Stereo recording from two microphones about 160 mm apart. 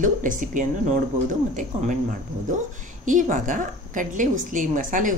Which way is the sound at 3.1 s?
55° right (ahead or behind).